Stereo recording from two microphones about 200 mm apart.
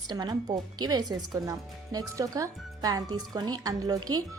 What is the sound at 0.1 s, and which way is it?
A woman's voice, 20° right (ahead or behind).